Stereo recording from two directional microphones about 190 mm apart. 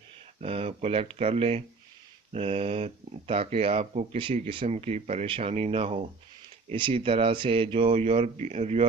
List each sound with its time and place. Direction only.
0.4 s speech: 30° right (ahead or behind)